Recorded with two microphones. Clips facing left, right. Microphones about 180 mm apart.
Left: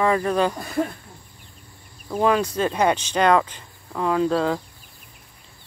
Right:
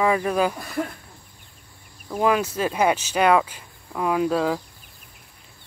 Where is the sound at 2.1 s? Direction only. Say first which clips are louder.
Left 1 dB; 5° right (ahead or behind).